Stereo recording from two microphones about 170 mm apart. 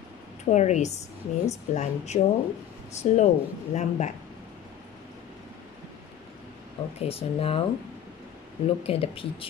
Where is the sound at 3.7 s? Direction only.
45° left (ahead or behind).